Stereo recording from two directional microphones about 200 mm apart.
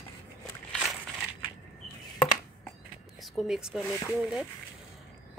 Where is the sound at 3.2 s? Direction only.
Centre (ahead or behind).